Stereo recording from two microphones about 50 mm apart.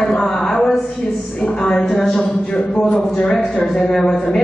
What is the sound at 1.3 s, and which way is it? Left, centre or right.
A man's voice, centre.